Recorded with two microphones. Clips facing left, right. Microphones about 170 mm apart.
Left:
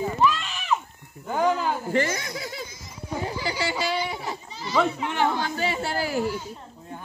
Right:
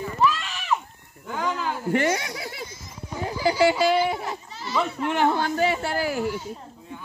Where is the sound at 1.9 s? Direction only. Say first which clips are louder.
Right 5 dB; 65° right (ahead or behind).